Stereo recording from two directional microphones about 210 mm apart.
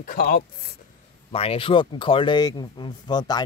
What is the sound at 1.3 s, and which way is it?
Speech, 25° left (ahead or behind).